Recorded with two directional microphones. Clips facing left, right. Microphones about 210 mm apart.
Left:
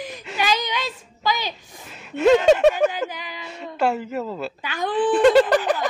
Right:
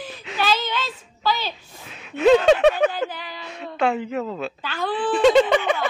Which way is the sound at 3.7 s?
5° left (ahead or behind).